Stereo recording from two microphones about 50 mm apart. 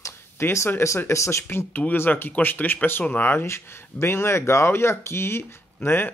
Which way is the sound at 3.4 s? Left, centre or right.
Left.